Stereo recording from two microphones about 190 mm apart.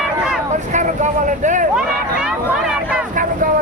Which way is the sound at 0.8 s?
40° right (ahead or behind).